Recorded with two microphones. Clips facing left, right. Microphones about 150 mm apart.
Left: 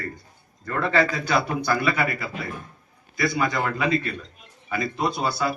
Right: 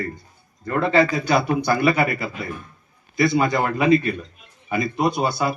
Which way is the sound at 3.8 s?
20° right (ahead or behind).